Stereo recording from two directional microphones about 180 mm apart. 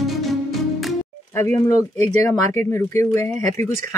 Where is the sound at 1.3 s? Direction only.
15° left (ahead or behind).